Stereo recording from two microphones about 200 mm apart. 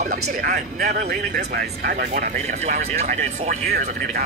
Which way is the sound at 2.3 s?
35° right (ahead or behind).